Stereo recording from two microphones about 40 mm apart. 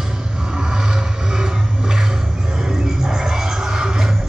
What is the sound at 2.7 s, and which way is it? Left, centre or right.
Music, centre.